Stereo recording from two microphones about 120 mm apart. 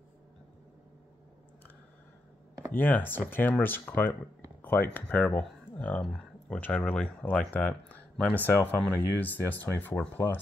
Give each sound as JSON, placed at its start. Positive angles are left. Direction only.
{"t": 2.7, "sound": "speech", "side_deg": 15}